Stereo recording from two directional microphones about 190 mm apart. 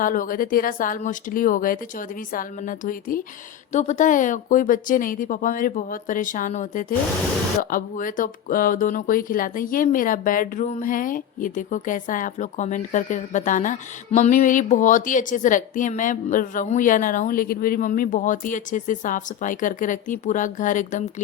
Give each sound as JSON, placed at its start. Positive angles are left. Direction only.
{"t": 0.0, "sound": "speech", "side_deg": 45}